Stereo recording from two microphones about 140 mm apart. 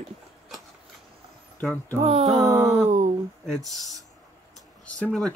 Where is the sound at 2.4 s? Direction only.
20° right (ahead or behind).